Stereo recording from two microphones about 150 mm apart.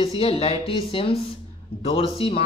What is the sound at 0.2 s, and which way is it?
Speech, 40° left (ahead or behind).